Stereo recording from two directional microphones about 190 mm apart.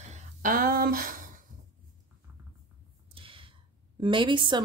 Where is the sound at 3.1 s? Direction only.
25° right (ahead or behind).